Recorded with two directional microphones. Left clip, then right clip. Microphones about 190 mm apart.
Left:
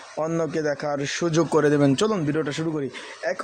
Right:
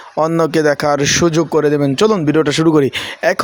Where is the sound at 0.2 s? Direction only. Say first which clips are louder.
Right 11 dB; 30° right (ahead or behind).